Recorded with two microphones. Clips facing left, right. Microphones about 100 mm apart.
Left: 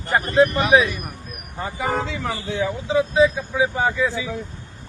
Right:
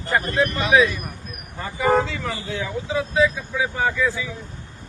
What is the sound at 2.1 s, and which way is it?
A man's voice, 20° left (ahead or behind).